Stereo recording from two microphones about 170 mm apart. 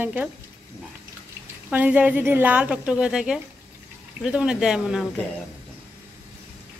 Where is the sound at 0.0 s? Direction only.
10° right (ahead or behind).